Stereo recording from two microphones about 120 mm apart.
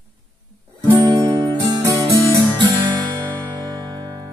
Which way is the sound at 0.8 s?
30° right (ahead or behind).